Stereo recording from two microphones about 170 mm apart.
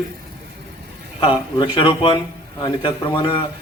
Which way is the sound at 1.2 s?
30° left (ahead or behind).